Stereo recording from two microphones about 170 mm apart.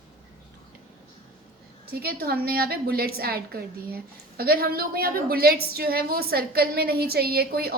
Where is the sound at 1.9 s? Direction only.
65° right (ahead or behind).